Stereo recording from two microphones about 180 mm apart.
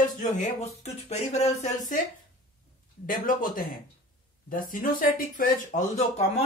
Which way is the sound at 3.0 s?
50° left (ahead or behind).